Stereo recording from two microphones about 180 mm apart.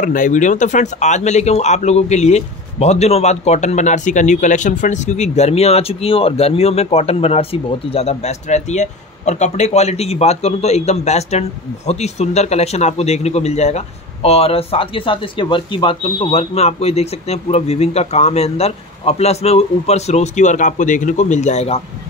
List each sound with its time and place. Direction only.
0.0 s speech: 45° left (ahead or behind)